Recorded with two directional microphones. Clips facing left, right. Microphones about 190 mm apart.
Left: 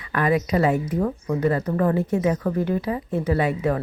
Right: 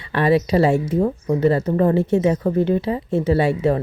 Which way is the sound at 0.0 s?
30° right (ahead or behind).